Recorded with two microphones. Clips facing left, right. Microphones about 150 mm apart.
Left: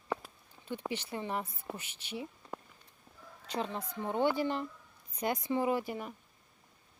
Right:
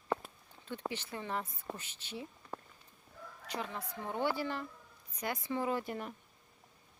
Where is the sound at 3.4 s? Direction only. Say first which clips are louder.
Left 4 dB; 25° left (ahead or behind); by 6.1 s 5° left (ahead or behind).